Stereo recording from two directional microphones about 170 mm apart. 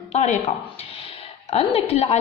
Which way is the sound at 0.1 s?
40° left (ahead or behind).